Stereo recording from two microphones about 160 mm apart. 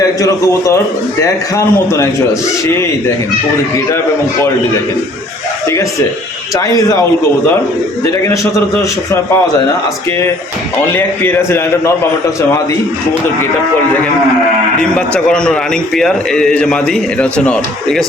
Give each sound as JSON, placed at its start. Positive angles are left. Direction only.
{"t": 0.0, "sound": "a man's voice", "side_deg": 20}
{"t": 6.6, "sound": "a man's voice", "side_deg": 20}
{"t": 8.2, "sound": "a man's voice", "side_deg": 20}
{"t": 10.9, "sound": "a man's voice", "side_deg": 15}
{"t": 14.8, "sound": "a man's voice", "side_deg": 5}